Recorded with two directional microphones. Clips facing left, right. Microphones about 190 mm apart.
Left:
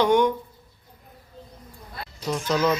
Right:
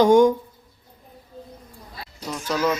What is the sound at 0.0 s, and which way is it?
Speech, 45° right (ahead or behind).